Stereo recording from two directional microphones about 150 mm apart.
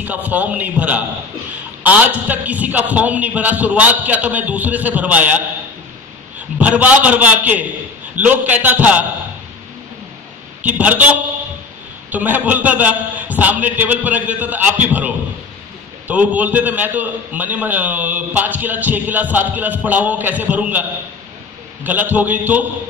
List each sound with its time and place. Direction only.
0.0 s a man's voice: 10° right (ahead or behind)
6.6 s a man's voice: 10° right (ahead or behind)
10.6 s a man's voice: 10° right (ahead or behind)
21.8 s a man's voice: 10° right (ahead or behind)